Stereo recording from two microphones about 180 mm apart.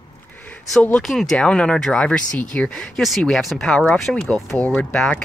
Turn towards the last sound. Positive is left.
turn(degrees=5)  # may be behind; listen again after turning